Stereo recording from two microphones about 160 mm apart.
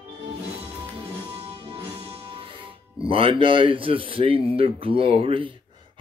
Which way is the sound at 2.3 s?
35° right (ahead or behind).